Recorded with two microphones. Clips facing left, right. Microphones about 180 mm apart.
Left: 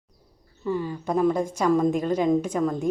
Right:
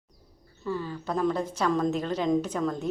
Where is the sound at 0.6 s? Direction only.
15° left (ahead or behind).